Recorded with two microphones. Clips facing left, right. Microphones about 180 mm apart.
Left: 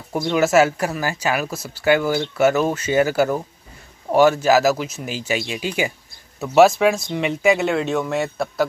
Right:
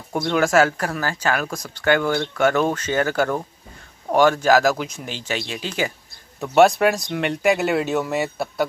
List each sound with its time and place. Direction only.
0.1 s speech: 5° left (ahead or behind)